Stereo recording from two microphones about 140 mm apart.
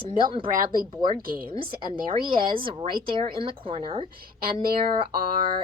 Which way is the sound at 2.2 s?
35° right (ahead or behind).